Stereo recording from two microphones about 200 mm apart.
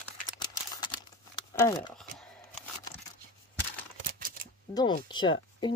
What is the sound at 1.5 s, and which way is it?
Speech, 15° left (ahead or behind).